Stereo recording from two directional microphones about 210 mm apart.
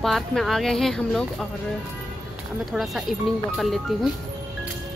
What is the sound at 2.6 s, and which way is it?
Speech, centre (ahead or behind).